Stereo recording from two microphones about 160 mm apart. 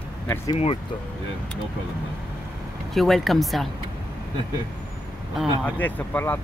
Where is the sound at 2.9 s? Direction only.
Centre (ahead or behind).